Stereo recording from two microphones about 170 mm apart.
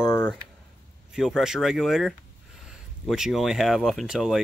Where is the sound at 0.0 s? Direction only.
15° left (ahead or behind).